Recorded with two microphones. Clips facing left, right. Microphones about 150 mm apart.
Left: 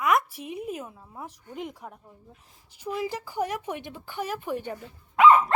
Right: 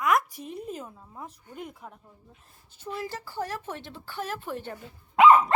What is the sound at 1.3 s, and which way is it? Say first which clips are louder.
Speech: left 4 dB; 90° left.